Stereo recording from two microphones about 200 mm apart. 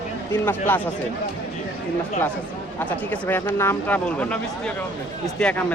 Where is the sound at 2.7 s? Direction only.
10° left (ahead or behind).